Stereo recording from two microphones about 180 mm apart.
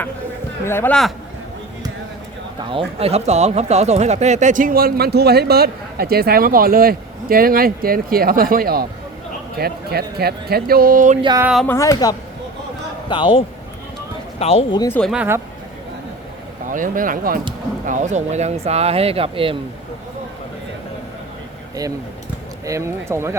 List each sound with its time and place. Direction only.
0.6 s speech: 15° left (ahead or behind)
2.6 s speech: 30° right (ahead or behind); by 11.2 s 45° right (ahead or behind)
11.6 s a man's voice: 15° left (ahead or behind); by 14.8 s 35° left (ahead or behind)
14.8 s speech: 15° left (ahead or behind)
15.0 s speech: 5° right (ahead or behind)
16.6 s speech: 50° right (ahead or behind); by 19.5 s 30° right (ahead or behind)
22.6 s speech: 15° right (ahead or behind)